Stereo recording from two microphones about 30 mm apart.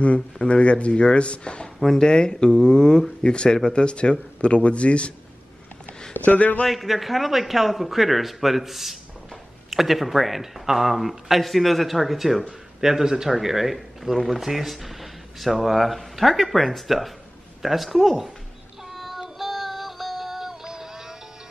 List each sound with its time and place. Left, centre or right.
0.0 s speech: left
6.1 s speech: left
6.7 s speech: centre
12.8 s speech: centre
18.9 s child singing: centre
19.3 s synthetic singing: centre